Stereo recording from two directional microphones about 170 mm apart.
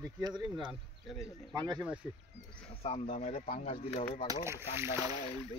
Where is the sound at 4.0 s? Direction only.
50° left (ahead or behind).